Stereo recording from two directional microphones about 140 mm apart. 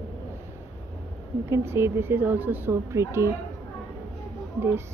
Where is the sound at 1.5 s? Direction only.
20° right (ahead or behind).